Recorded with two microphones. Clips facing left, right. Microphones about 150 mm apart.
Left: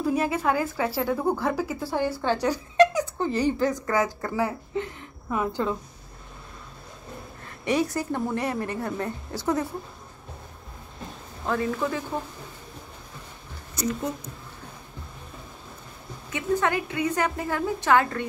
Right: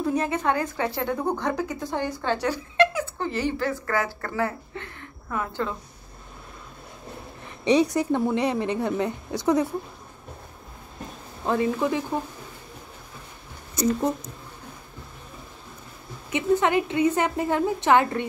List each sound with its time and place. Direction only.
0.1 s speech: 5° left (ahead or behind)
7.4 s a woman's voice: 20° right (ahead or behind)
11.4 s a woman's voice: 20° right (ahead or behind)
16.3 s a woman's voice: 20° right (ahead or behind)